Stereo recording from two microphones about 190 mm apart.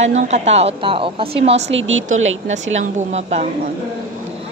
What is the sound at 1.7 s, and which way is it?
Speech, 90° right.